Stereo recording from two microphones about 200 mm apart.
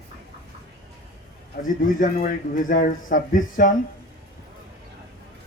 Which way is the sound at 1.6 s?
40° left (ahead or behind).